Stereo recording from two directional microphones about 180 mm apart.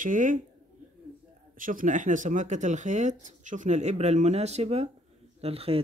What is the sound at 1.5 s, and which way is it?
Speech, 50° right (ahead or behind).